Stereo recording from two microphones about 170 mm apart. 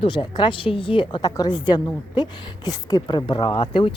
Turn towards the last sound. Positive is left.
turn(degrees=30)  # may be behind; listen again after turning